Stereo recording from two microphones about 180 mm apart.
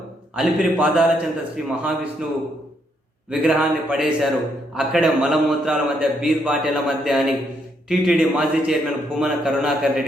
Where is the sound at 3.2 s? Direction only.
5° right (ahead or behind).